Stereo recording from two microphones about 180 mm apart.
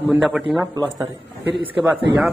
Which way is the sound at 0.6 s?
20° right (ahead or behind).